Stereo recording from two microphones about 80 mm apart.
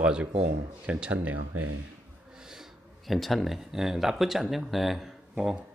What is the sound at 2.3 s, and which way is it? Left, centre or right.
Speech, centre.